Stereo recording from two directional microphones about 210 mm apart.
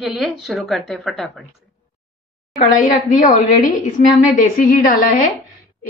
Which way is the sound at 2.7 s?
40° left (ahead or behind).